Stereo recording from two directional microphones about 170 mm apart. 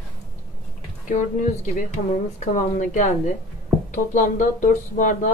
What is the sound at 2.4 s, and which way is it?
Speech, 45° left (ahead or behind).